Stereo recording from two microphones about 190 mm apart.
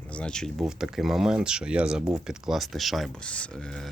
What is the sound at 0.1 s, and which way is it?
Speech, 5° left (ahead or behind).